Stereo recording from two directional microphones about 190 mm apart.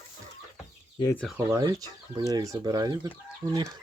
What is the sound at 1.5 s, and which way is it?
Speech, 20° right (ahead or behind).